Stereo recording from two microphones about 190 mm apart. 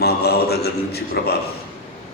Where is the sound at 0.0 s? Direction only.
55° left (ahead or behind).